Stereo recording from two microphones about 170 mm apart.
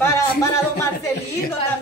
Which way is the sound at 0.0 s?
15° left (ahead or behind).